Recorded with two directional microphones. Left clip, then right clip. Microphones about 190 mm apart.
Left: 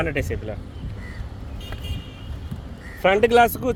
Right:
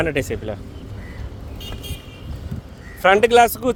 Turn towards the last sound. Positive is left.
turn(degrees=-15)  # may be behind; listen again after turning